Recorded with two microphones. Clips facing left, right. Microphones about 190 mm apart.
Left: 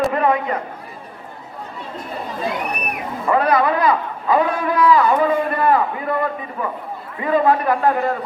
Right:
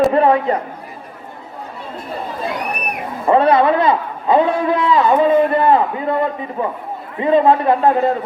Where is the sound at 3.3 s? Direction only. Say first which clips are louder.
Right 4 dB; 25° right (ahead or behind).